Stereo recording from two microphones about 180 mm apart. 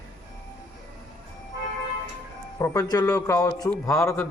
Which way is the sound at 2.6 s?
20° left (ahead or behind).